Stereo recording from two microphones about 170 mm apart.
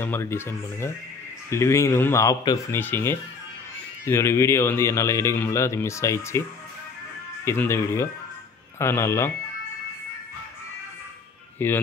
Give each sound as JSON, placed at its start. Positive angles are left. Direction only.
{"t": 0.0, "sound": "a man's voice", "side_deg": 15}
{"t": 7.4, "sound": "a man's voice", "side_deg": 15}
{"t": 11.5, "sound": "speech", "side_deg": 10}